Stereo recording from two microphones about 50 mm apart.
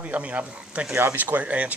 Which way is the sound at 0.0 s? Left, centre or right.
Right.